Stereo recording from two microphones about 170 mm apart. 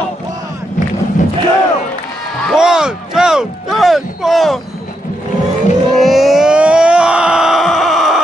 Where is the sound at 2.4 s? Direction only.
5° right (ahead or behind).